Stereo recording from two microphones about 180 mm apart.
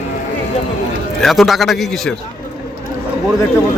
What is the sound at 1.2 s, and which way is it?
Speech, centre (ahead or behind).